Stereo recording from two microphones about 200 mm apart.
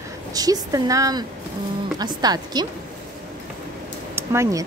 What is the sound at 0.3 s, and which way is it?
A woman's voice, 20° right (ahead or behind).